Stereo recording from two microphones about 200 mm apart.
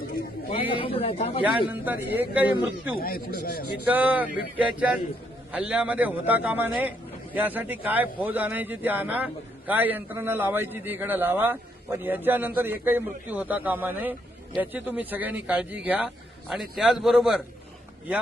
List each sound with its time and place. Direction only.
0.5 s speech: 25° left (ahead or behind)
1.7 s a man's voice: 10° right (ahead or behind)
3.0 s speech: 50° left (ahead or behind)
3.8 s a man's voice: 10° right (ahead or behind)